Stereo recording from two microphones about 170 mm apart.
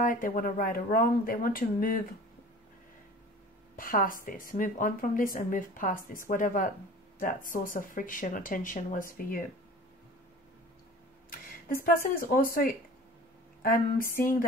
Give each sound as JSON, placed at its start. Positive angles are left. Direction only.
{"t": 0.0, "sound": "speech", "side_deg": 55}
{"t": 3.7, "sound": "a woman's voice", "side_deg": 55}
{"t": 11.7, "sound": "speech", "side_deg": 55}
{"t": 13.6, "sound": "speech", "side_deg": 55}